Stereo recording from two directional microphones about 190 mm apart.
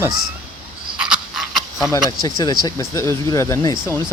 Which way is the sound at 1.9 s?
20° left (ahead or behind).